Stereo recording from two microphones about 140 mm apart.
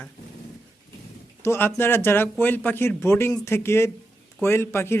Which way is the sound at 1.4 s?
15° left (ahead or behind).